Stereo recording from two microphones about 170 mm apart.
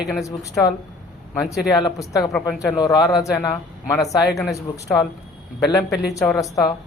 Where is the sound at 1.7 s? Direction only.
20° left (ahead or behind).